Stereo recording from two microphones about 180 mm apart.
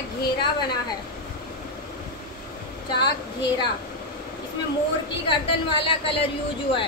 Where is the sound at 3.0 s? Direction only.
25° left (ahead or behind).